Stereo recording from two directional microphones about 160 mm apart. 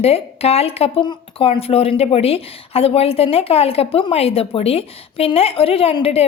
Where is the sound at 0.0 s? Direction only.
40° left (ahead or behind).